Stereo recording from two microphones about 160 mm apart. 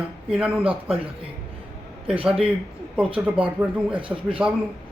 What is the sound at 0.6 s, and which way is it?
Speech, 35° right (ahead or behind).